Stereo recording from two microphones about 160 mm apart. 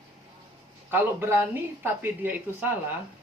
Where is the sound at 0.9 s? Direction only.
15° right (ahead or behind).